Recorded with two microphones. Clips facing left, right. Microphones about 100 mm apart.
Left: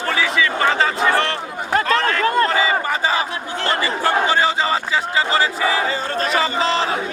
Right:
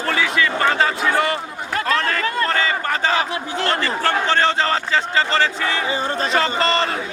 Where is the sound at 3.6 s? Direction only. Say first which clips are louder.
Left 1 dB; 10° left (ahead or behind).